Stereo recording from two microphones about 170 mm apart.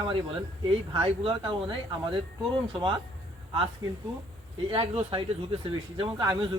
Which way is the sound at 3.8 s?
25° right (ahead or behind).